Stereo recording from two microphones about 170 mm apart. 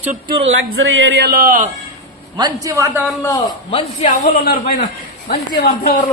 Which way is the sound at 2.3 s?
20° right (ahead or behind).